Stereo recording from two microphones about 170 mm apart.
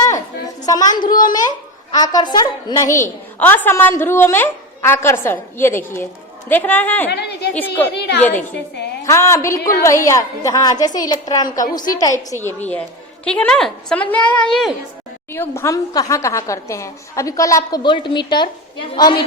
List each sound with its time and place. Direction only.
0.6 s a woman's voice: 20° left (ahead or behind)
7.1 s a woman's voice: 80° left
7.5 s a woman's voice: 10° left (ahead or behind)
7.9 s a woman's voice: 75° left (ahead or behind)
8.2 s a woman's voice: 10° left (ahead or behind)
11.6 s a woman's voice: 50° left (ahead or behind)
12.4 s a woman's voice: 10° left (ahead or behind)
15.3 s a woman's voice: 15° left (ahead or behind)